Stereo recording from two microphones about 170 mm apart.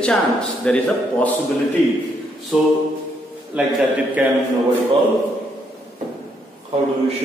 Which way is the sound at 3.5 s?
10° right (ahead or behind).